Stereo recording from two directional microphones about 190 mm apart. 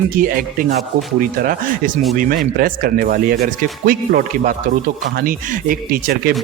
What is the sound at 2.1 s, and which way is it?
Speech, 45° right (ahead or behind).